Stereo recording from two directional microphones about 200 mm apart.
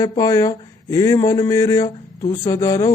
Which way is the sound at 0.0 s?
15° left (ahead or behind).